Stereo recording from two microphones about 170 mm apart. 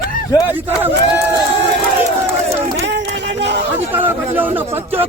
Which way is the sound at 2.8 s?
90° right.